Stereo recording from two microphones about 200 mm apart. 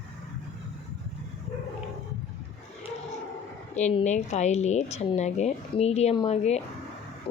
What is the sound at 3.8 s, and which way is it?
A woman's voice, 35° left (ahead or behind).